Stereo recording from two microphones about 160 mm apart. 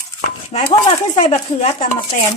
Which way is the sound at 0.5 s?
40° left (ahead or behind).